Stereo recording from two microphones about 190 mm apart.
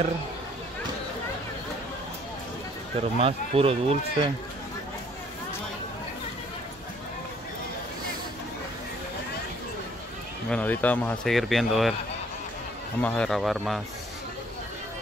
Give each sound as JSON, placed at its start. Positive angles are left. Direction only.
{"t": 3.2, "sound": "speech", "side_deg": -30}
{"t": 10.5, "sound": "speech", "side_deg": 10}
{"t": 13.0, "sound": "speech", "side_deg": 5}